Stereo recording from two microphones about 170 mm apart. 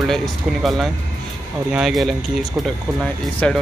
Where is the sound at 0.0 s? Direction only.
Centre (ahead or behind).